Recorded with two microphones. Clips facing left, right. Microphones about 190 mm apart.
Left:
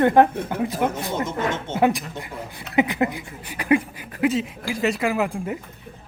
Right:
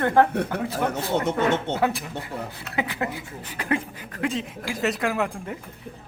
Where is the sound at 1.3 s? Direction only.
65° right (ahead or behind).